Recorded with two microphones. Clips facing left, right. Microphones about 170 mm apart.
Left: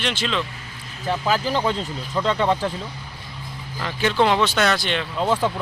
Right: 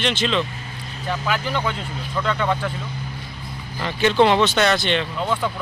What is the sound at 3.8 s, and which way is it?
Speech, 5° left (ahead or behind).